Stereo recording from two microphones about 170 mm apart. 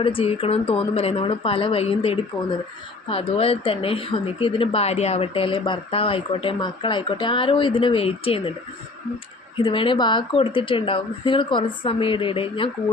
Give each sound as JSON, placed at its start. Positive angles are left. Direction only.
{"t": 0.0, "sound": "speech", "side_deg": 35}
{"t": 9.6, "sound": "speech", "side_deg": 30}